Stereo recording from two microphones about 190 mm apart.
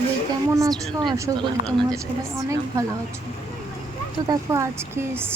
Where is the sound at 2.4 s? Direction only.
15° right (ahead or behind).